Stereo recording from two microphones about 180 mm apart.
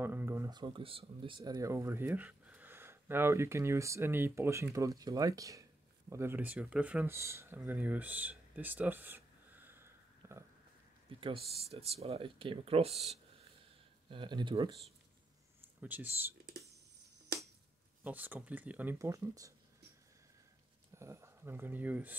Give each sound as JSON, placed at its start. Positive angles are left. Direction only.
{"t": 0.0, "sound": "speech", "side_deg": -10}
{"t": 11.1, "sound": "speech", "side_deg": -30}
{"t": 15.8, "sound": "speech", "side_deg": -10}
{"t": 18.0, "sound": "speech", "side_deg": -10}
{"t": 20.9, "sound": "speech", "side_deg": -15}